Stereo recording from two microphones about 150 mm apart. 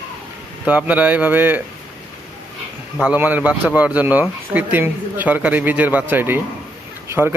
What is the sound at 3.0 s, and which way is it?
A man's voice, 10° right (ahead or behind).